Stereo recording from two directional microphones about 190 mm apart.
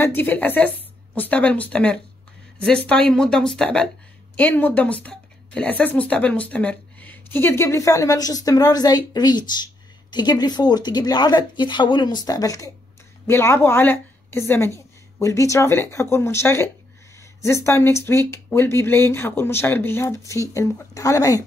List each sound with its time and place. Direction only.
0.0 s a woman's voice: 10° left (ahead or behind)